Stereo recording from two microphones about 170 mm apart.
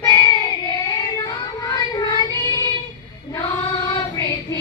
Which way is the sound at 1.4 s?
25° left (ahead or behind).